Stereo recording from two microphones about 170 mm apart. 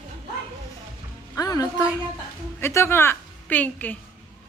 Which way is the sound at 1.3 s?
20° left (ahead or behind).